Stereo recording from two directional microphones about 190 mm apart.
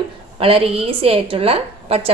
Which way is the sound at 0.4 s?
30° right (ahead or behind).